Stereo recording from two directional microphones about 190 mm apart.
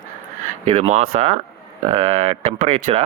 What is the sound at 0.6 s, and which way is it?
Speech, 30° right (ahead or behind).